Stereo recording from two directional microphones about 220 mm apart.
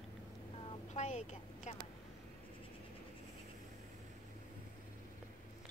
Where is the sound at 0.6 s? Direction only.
30° left (ahead or behind).